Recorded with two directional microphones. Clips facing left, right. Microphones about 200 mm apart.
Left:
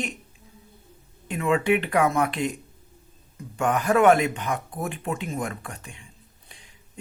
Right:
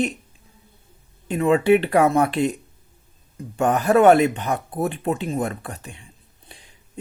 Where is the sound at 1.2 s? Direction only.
35° right (ahead or behind).